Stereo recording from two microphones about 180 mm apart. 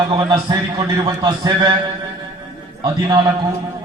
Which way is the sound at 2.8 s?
25° right (ahead or behind).